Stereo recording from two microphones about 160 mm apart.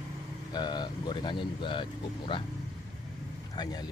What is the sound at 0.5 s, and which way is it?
Speech, 25° left (ahead or behind).